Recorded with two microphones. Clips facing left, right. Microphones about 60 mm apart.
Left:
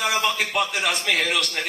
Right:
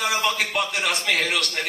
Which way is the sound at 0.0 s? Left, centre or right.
Centre.